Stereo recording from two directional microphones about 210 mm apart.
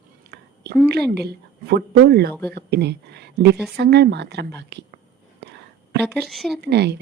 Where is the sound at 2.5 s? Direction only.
50° right (ahead or behind).